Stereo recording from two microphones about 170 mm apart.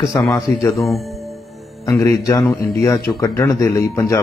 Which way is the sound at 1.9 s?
15° left (ahead or behind).